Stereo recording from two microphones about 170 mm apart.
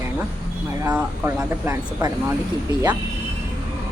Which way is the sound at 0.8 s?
15° right (ahead or behind).